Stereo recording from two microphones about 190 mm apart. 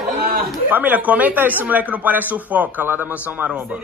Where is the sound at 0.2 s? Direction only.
50° right (ahead or behind).